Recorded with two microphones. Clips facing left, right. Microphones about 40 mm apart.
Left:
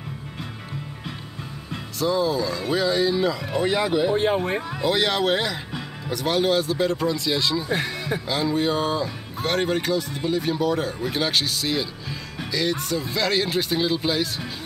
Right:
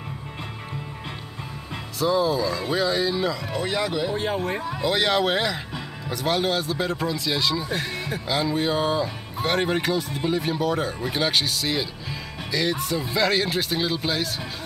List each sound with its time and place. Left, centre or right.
2.0 s speech: centre; by 4.6 s left
4.6 s speech: centre